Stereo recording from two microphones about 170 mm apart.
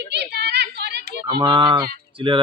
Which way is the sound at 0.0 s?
80° right.